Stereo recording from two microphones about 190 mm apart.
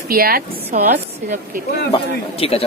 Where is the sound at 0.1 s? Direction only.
50° right (ahead or behind).